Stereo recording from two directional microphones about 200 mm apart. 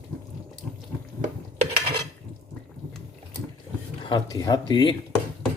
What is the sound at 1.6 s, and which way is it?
Cutlery, 25° right (ahead or behind).